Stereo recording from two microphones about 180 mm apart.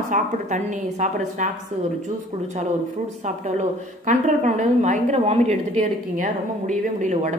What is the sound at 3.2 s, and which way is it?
A woman's voice, 40° right (ahead or behind).